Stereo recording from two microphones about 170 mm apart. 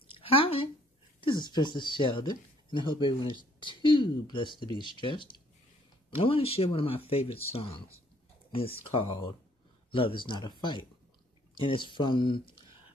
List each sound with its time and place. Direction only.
0.1 s a sound: 35° left (ahead or behind)
1.2 s speech: 25° left (ahead or behind)
8.9 s speech: 30° left (ahead or behind)